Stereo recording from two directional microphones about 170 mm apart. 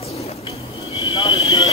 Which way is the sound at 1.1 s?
30° left (ahead or behind).